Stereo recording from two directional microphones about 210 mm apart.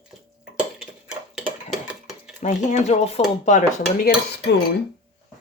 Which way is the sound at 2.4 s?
35° left (ahead or behind).